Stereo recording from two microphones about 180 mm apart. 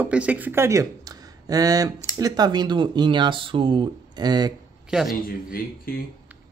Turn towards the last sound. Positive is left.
turn(degrees=55)  # may be behind; listen again after turning